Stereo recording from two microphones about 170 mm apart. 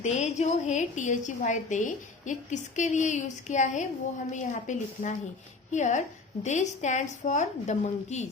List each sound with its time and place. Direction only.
0.0 s a woman's voice: 40° left (ahead or behind)